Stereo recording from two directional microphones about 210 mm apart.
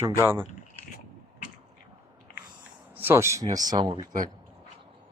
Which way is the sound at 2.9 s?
10° right (ahead or behind).